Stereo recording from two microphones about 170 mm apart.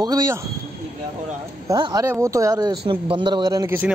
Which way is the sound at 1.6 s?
20° right (ahead or behind).